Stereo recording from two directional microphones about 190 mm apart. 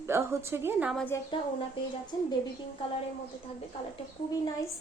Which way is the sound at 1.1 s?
15° left (ahead or behind).